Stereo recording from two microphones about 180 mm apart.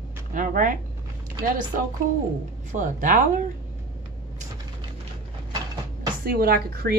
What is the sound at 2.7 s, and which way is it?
Speech, 45° right (ahead or behind).